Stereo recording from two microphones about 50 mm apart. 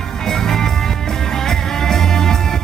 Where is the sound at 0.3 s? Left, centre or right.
Centre.